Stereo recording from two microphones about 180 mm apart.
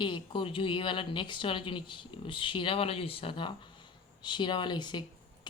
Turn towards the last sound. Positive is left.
turn(degrees=25)  # may be behind; listen again after turning